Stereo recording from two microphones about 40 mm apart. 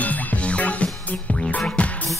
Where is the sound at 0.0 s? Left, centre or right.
Left.